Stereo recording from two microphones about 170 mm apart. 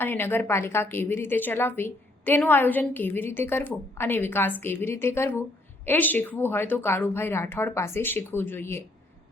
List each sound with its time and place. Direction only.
0.0 s a woman's voice: 10° left (ahead or behind)